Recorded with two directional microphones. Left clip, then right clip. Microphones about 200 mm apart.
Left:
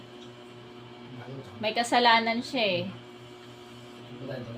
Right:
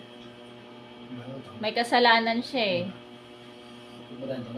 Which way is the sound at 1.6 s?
5° right (ahead or behind).